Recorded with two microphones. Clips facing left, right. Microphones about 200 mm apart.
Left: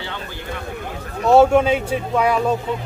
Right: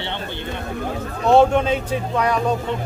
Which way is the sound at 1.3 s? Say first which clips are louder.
Left 2 dB; 5° left (ahead or behind).